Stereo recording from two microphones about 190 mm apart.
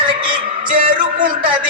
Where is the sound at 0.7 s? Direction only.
45° right (ahead or behind).